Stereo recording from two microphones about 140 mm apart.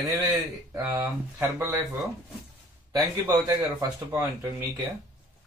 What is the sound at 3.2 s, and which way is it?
Speech, 30° right (ahead or behind).